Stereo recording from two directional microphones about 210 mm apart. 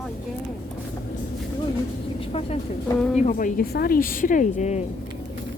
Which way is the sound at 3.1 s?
35° left (ahead or behind).